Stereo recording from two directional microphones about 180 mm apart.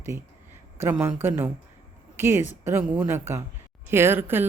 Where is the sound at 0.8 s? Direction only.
10° right (ahead or behind).